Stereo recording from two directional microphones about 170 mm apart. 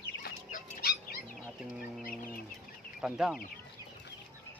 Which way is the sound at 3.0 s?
5° right (ahead or behind).